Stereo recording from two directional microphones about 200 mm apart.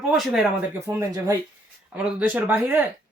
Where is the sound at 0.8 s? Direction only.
15° right (ahead or behind).